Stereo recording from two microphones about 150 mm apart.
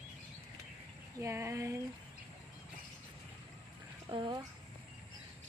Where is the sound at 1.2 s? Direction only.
20° right (ahead or behind).